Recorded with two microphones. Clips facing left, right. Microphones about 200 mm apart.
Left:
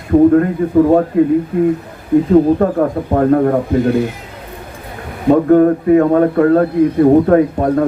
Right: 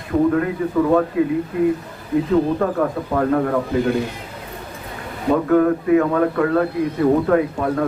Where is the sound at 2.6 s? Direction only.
40° left (ahead or behind).